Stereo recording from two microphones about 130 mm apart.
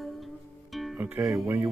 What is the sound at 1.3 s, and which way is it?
Speech, 20° right (ahead or behind).